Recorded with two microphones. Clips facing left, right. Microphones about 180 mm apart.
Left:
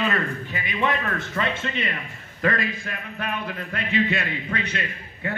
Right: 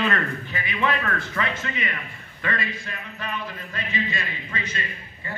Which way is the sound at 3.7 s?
65° left (ahead or behind).